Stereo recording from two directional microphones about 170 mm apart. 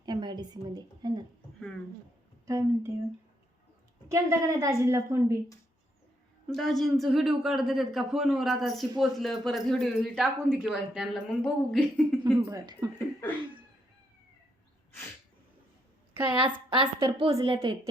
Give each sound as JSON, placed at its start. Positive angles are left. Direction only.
{"t": 0.0, "sound": "a woman's voice", "side_deg": -25}
{"t": 2.5, "sound": "a woman's voice", "side_deg": -15}
{"t": 4.1, "sound": "a woman's voice", "side_deg": -15}
{"t": 6.5, "sound": "speech", "side_deg": 0}
{"t": 12.2, "sound": "speech", "side_deg": -25}
{"t": 16.6, "sound": "a woman's voice", "side_deg": -30}